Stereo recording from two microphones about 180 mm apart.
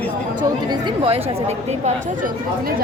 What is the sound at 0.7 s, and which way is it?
Speech, 35° right (ahead or behind).